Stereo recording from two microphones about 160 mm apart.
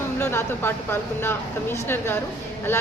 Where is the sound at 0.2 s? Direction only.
15° left (ahead or behind).